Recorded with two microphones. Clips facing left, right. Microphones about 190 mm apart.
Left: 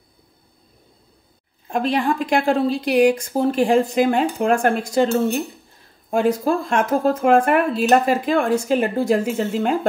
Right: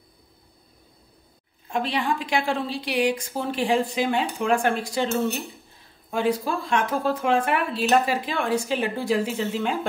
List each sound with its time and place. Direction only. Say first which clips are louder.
1.7 s speech: left 5 dB; 45° left (ahead or behind)
6.0 s speech: left 6 dB; 45° left (ahead or behind)